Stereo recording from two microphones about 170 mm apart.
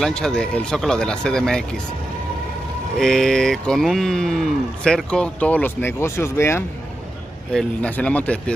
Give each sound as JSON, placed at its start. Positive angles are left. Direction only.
{"t": 0.0, "sound": "speech", "side_deg": 5}
{"t": 3.0, "sound": "speech", "side_deg": 5}